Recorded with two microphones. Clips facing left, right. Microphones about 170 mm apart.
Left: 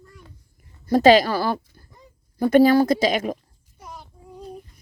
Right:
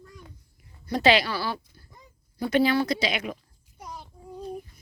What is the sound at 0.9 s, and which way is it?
Speech, 45° left (ahead or behind).